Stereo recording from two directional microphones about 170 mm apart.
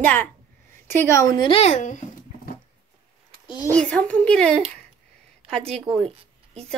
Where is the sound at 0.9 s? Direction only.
15° left (ahead or behind); by 2.0 s 45° left (ahead or behind).